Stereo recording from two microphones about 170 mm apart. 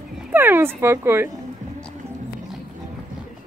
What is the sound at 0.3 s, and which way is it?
Speech, 10° right (ahead or behind).